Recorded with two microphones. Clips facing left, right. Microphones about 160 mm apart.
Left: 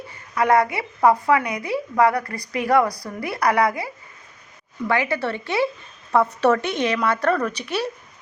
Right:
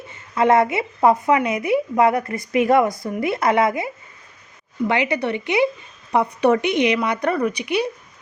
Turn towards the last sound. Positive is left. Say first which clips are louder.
# right 4 dB
turn(degrees=-15)  # may be behind; listen again after turning